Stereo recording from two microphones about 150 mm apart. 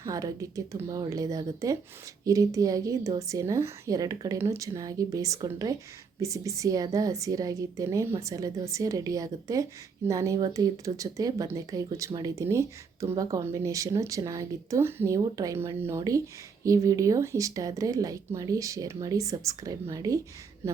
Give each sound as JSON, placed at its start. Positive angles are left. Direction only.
{"t": 0.0, "sound": "speech", "side_deg": -25}